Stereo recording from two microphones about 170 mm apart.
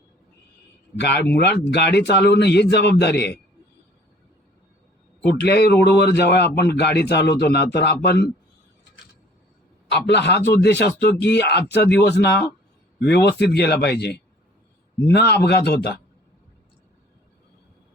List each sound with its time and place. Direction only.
0.9 s a man's voice: 80° left
5.2 s a man's voice: 75° left (ahead or behind)
9.9 s a man's voice: 85° left; by 15.9 s 70° left (ahead or behind)